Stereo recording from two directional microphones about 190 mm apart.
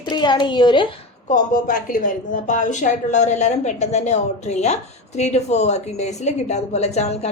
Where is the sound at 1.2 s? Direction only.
40° left (ahead or behind).